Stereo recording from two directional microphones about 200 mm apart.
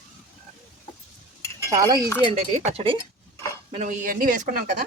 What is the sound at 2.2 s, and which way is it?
Speech, 30° right (ahead or behind).